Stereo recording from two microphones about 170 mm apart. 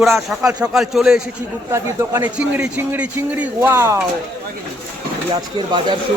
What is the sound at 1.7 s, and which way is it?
A man's voice, 15° right (ahead or behind).